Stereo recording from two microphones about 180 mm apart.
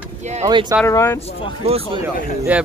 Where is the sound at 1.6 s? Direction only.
35° right (ahead or behind).